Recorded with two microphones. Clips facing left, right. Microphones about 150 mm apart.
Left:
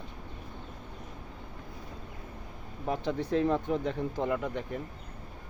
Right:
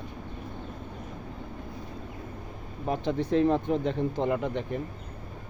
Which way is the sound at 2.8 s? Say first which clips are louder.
Right 3 dB; 20° right (ahead or behind).